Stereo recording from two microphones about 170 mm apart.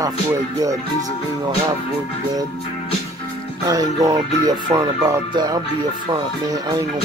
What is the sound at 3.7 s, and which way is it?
Speech, 20° right (ahead or behind).